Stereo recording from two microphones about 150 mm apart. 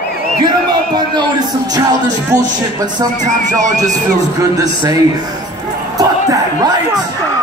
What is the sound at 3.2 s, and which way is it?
Music, 55° right (ahead or behind).